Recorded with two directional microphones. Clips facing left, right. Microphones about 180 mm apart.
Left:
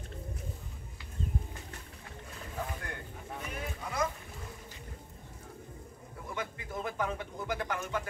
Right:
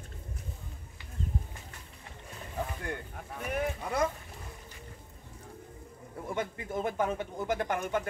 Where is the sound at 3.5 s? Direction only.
55° right (ahead or behind).